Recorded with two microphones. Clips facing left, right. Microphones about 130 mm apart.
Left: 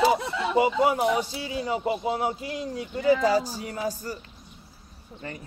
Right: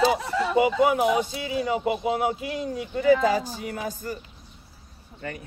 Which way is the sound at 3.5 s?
55° right (ahead or behind).